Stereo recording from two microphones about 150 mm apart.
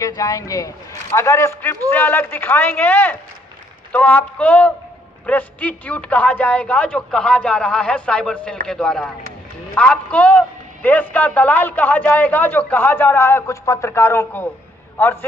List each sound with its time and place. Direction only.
0.0 s a man's voice: 25° left (ahead or behind)